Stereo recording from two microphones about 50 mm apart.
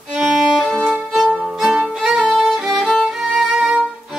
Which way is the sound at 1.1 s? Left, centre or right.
Centre.